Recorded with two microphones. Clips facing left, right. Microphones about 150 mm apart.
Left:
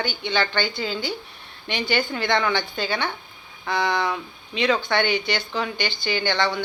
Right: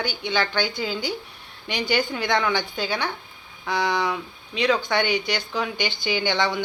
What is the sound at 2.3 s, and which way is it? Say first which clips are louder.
Speech: even; 10° right (ahead or behind).